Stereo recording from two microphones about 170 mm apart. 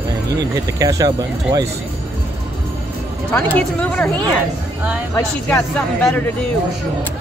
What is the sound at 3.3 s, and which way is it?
Speech, 10° left (ahead or behind).